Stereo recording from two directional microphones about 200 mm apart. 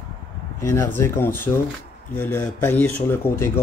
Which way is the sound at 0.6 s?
15° left (ahead or behind).